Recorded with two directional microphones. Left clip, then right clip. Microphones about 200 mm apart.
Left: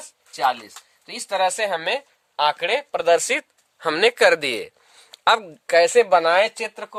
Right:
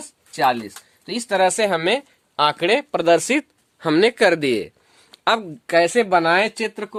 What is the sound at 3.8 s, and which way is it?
Speech, 10° left (ahead or behind).